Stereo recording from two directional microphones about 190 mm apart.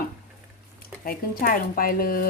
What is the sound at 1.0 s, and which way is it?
Speech, 50° left (ahead or behind).